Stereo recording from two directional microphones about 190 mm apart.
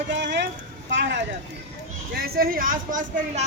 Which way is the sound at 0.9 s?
65° right (ahead or behind).